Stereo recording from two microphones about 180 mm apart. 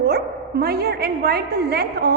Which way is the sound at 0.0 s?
60° right (ahead or behind).